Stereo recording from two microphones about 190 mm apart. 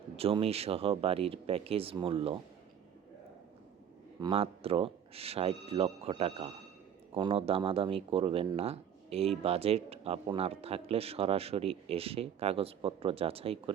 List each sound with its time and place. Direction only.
0.2 s speech: 30° right (ahead or behind)
4.2 s speech: 30° right (ahead or behind)